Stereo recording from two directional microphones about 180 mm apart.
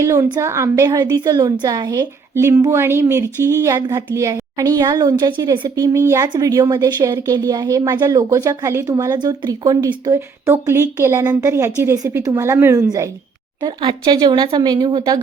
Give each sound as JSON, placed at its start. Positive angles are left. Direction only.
{"t": 0.0, "sound": "a woman's voice", "side_deg": -15}